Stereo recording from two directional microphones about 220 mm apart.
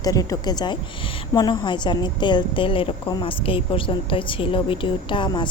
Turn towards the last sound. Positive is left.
turn(degrees=20)  # may be behind; listen again after turning